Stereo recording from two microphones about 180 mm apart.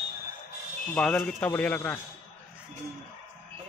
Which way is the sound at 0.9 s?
5° left (ahead or behind).